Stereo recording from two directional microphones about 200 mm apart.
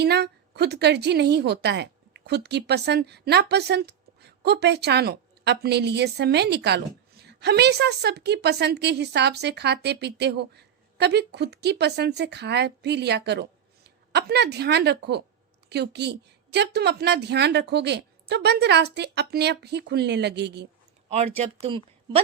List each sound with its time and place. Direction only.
0.0 s a woman's voice: 55° right (ahead or behind)
21.1 s speech: 30° right (ahead or behind)